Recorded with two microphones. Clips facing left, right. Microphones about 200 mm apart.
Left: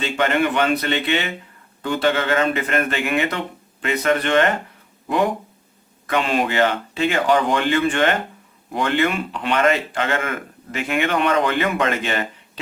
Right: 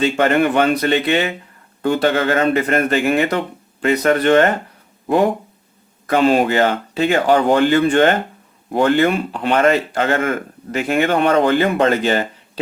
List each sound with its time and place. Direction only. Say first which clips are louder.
0.0 s speech: right 5 dB; 45° right (ahead or behind)